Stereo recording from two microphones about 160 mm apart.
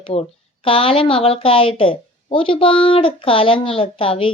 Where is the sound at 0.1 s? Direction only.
35° left (ahead or behind).